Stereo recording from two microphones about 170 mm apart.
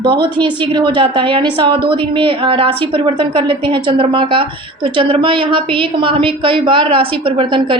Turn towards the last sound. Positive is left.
turn(degrees=-30)  # may be behind; listen again after turning